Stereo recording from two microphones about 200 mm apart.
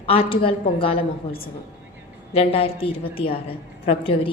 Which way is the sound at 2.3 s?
30° left (ahead or behind).